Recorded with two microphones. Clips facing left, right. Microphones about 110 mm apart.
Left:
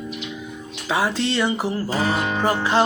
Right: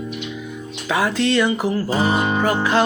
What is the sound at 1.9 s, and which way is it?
Music, 20° right (ahead or behind).